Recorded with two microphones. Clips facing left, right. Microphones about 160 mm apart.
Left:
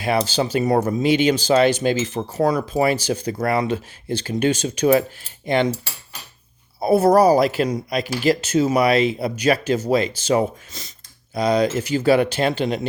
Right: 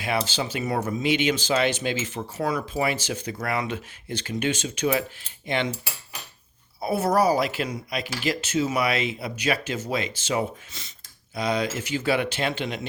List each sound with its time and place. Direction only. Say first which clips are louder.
0.0 s speech: left 6 dB; 40° left (ahead or behind)
6.7 s speech: left 8 dB; 40° left (ahead or behind)